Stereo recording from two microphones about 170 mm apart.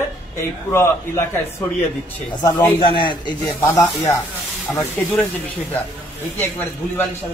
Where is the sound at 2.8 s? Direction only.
30° left (ahead or behind).